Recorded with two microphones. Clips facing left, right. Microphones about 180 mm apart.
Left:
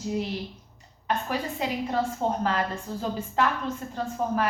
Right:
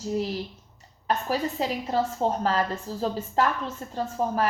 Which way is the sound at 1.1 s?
35° right (ahead or behind).